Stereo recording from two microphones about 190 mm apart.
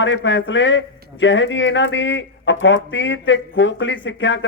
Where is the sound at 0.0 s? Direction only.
75° left (ahead or behind).